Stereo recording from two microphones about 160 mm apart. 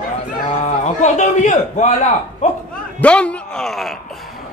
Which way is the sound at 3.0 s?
5° left (ahead or behind).